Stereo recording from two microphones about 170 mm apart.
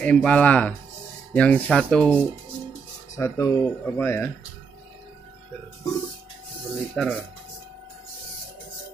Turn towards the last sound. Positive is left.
turn(degrees=5)  # may be behind; listen again after turning